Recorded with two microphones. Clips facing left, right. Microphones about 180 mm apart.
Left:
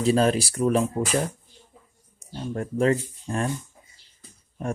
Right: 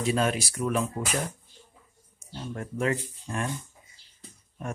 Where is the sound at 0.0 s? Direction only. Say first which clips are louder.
Left 6 dB; 35° left (ahead or behind).